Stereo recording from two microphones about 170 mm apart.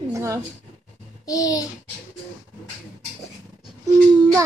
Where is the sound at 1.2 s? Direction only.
20° left (ahead or behind).